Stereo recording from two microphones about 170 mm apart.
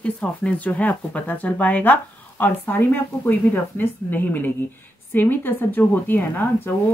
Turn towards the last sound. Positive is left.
turn(degrees=10)  # may be behind; listen again after turning